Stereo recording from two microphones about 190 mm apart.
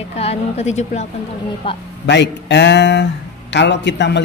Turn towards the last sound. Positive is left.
turn(degrees=65)  # may be behind; listen again after turning